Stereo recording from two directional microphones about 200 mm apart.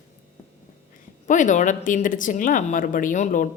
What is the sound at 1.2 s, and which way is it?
A woman's voice, 40° left (ahead or behind).